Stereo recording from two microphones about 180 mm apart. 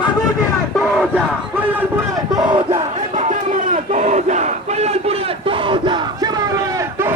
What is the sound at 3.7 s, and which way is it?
Battle cry, 40° right (ahead or behind).